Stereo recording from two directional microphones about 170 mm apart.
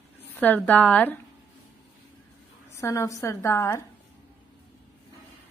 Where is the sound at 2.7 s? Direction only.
15° left (ahead or behind).